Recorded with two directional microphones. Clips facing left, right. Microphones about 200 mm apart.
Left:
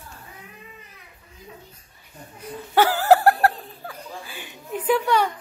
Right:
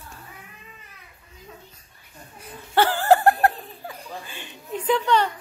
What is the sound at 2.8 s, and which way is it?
Laughter, 10° left (ahead or behind).